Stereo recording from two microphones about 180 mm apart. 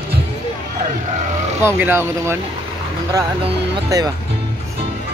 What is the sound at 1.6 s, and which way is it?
Speech, 10° right (ahead or behind).